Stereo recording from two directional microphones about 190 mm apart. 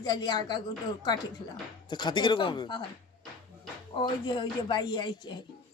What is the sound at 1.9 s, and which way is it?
Speech, 25° left (ahead or behind).